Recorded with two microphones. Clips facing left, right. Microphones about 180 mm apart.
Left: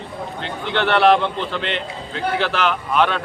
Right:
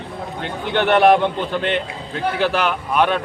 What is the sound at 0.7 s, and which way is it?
Speech, 15° right (ahead or behind).